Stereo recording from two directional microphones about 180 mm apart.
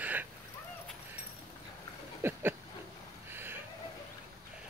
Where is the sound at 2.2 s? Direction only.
15° right (ahead or behind).